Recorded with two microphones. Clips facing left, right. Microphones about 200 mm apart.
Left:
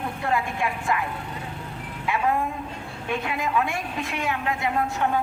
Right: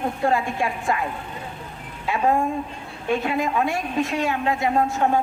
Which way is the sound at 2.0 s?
30° right (ahead or behind).